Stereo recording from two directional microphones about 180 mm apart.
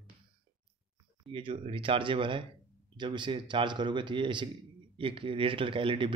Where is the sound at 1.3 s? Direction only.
30° right (ahead or behind).